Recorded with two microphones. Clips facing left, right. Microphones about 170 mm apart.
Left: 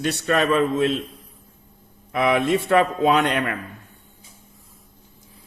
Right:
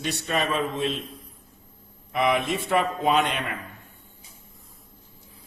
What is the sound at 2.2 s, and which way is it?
Speech, 60° left (ahead or behind).